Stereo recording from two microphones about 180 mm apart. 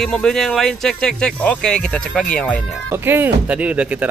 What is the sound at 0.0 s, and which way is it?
Speech, 5° left (ahead or behind).